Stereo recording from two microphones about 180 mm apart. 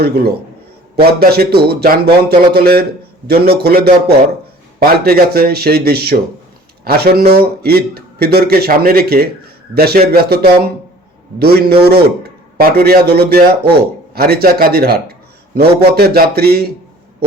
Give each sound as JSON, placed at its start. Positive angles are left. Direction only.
{"t": 0.0, "sound": "a man's voice", "side_deg": -60}